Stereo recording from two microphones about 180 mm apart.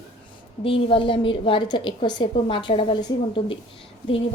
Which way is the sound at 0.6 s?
30° left (ahead or behind).